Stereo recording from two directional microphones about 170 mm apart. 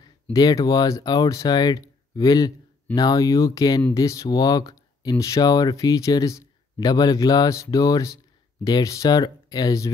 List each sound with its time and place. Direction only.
0.0 s speech: 20° left (ahead or behind)